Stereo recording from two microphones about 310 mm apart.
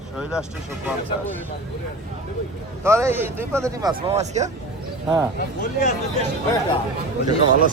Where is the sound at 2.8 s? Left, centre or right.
Centre.